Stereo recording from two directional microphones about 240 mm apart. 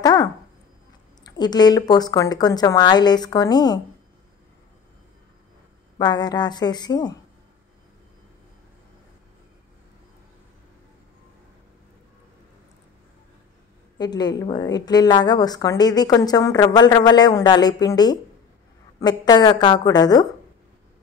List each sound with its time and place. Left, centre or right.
0.0 s dog: centre
1.2 s a woman's voice: centre
5.9 s a woman's voice: centre
13.9 s a woman's voice: centre